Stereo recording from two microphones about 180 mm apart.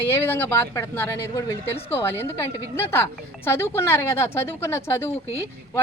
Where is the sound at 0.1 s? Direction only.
10° left (ahead or behind).